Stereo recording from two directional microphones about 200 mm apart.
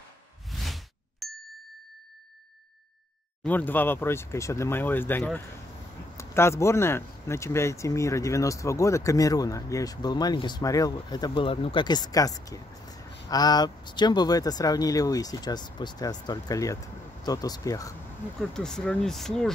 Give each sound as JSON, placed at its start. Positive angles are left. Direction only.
{"t": 0.5, "sound": "a sound", "side_deg": 0}
{"t": 3.4, "sound": "speech", "side_deg": 10}
{"t": 18.4, "sound": "speech", "side_deg": 5}